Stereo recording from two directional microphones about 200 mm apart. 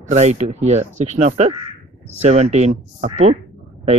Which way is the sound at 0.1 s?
35° right (ahead or behind).